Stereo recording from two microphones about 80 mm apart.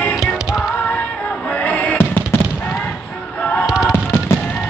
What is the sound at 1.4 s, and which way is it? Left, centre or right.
Music, centre.